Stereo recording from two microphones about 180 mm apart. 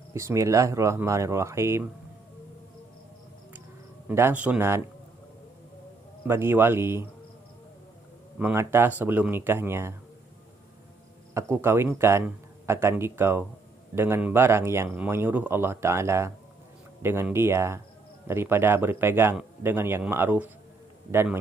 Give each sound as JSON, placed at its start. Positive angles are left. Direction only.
{"t": 0.1, "sound": "speech", "side_deg": -15}
{"t": 4.1, "sound": "speech", "side_deg": -10}
{"t": 6.2, "sound": "speech", "side_deg": -15}
{"t": 8.4, "sound": "speech", "side_deg": -10}
{"t": 11.3, "sound": "speech", "side_deg": -10}